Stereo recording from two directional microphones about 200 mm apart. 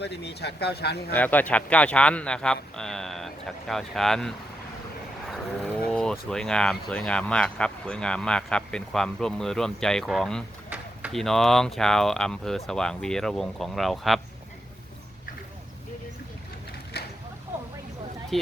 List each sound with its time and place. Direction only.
0.0 s speech: 55° left (ahead or behind)
1.1 s speech: 10° left (ahead or behind)
16.9 s a sound: 50° left (ahead or behind)